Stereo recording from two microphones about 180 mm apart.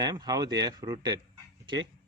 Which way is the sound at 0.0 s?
20° right (ahead or behind).